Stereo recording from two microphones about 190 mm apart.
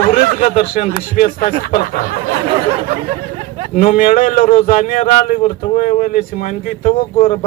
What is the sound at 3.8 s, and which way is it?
Speech, 45° left (ahead or behind).